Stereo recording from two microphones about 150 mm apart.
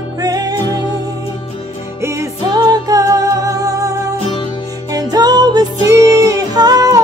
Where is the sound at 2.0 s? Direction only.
20° right (ahead or behind).